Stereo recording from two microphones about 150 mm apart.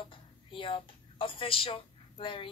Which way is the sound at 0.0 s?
35° left (ahead or behind).